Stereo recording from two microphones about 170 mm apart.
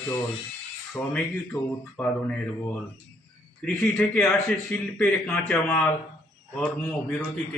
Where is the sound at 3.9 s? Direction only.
5° left (ahead or behind).